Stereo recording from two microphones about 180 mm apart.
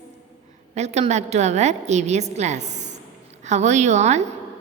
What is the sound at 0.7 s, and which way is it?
A woman's voice, 40° right (ahead or behind).